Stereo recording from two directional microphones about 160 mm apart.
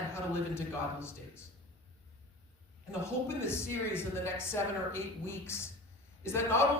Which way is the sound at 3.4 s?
15° left (ahead or behind).